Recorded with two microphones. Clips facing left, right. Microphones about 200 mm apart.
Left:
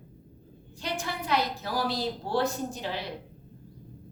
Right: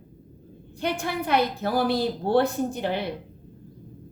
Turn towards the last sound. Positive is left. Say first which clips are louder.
# right 7 dB
turn(degrees=-60)  # may be behind; listen again after turning